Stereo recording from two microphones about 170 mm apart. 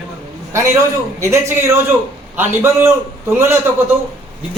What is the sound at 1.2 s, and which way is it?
A man's voice, 15° right (ahead or behind).